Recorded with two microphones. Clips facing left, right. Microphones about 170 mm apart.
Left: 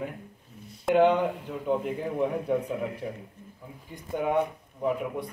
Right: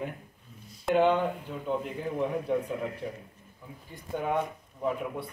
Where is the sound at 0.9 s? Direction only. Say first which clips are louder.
Left 3 dB; 15° left (ahead or behind).